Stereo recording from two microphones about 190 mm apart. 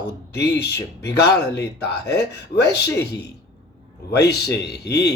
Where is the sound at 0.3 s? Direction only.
60° left (ahead or behind).